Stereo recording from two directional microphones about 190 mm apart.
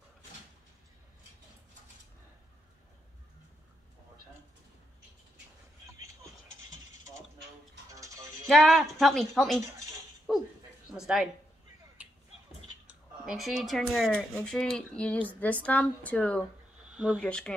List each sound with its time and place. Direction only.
7.9 s music: 15° right (ahead or behind)
8.5 s speech: centre (ahead or behind)
10.3 s dog: centre (ahead or behind)
11.0 s speech: 5° right (ahead or behind)
12.0 s a sound: 5° right (ahead or behind)
12.8 s speech: 5° right (ahead or behind)
16.9 s speech: 5° right (ahead or behind)
17.2 s speech: 5° left (ahead or behind)